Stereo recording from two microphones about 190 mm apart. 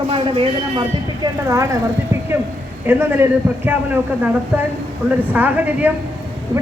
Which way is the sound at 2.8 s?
10° right (ahead or behind).